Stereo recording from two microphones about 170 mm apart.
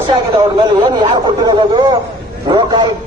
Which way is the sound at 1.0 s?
25° right (ahead or behind).